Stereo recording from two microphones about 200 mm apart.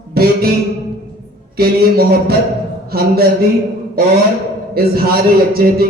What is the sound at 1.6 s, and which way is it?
A man's voice, 50° right (ahead or behind).